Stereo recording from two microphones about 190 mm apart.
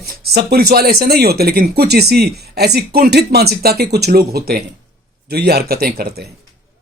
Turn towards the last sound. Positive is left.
turn(degrees=-55)  # may be behind; listen again after turning